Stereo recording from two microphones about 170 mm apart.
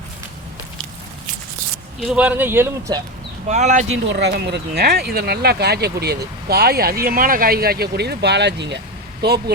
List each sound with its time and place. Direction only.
2.0 s speech: 10° right (ahead or behind)
3.5 s speech: 45° right (ahead or behind)
4.1 s speech: 85° right